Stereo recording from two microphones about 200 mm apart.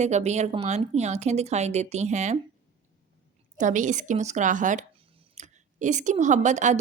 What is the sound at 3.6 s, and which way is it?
Speech, 40° right (ahead or behind).